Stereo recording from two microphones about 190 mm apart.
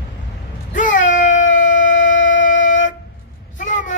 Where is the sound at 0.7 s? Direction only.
40° left (ahead or behind).